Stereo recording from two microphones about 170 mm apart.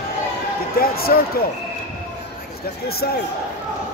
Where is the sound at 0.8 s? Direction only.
60° left (ahead or behind).